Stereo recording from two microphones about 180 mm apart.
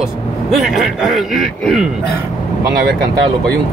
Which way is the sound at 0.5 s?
Centre (ahead or behind).